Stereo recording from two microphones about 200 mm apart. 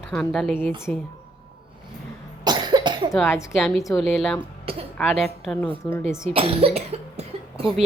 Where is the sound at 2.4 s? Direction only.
20° right (ahead or behind).